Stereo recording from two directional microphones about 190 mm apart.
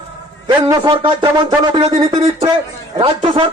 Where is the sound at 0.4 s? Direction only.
20° right (ahead or behind).